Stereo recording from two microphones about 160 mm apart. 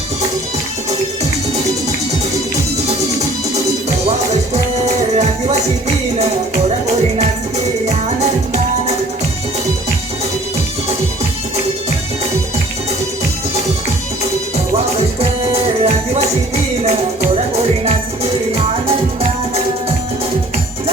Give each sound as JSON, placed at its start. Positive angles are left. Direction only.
{"t": 2.8, "sound": "music", "side_deg": -45}
{"t": 6.8, "sound": "music", "side_deg": -45}
{"t": 14.9, "sound": "music", "side_deg": -40}
{"t": 17.5, "sound": "music", "side_deg": -40}